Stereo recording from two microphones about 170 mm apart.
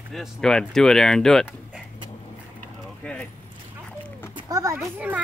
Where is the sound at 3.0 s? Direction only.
5° left (ahead or behind).